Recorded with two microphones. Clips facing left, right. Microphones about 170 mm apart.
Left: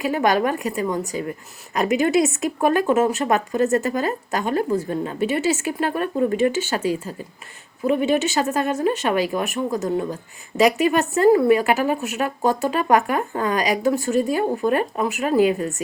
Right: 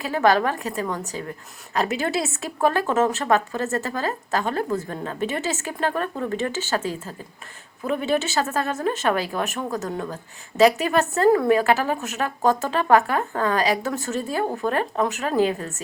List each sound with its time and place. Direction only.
0.0 s a woman's voice: 15° left (ahead or behind)
8.4 s a woman's voice: 15° left (ahead or behind)
10.7 s a woman's voice: 40° right (ahead or behind)
10.9 s a woman's voice: 15° left (ahead or behind)